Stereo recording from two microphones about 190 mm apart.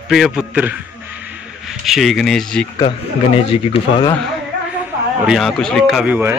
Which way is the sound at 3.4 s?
30° left (ahead or behind).